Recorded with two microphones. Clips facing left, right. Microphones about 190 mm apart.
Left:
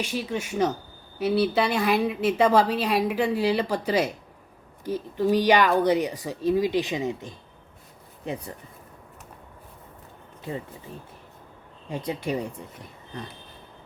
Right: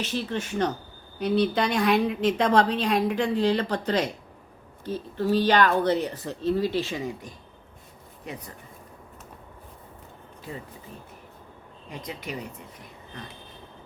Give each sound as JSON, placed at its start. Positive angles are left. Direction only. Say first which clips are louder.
{"t": 0.0, "sound": "a woman's voice", "louder": "even", "side_deg": 10}
{"t": 11.9, "sound": "speech", "louder": "left 7 dB", "side_deg": 30}